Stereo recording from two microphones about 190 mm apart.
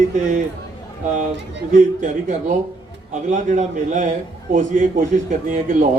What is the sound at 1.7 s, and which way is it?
Speech, 40° right (ahead or behind).